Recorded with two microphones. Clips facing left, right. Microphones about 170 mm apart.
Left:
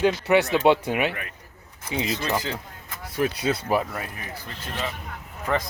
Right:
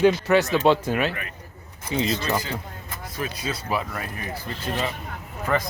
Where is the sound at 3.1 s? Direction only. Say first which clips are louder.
Left 6 dB; 70° left (ahead or behind); by 3.8 s 55° left (ahead or behind).